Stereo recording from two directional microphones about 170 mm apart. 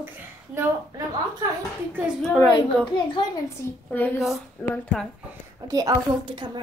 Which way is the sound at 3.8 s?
10° left (ahead or behind).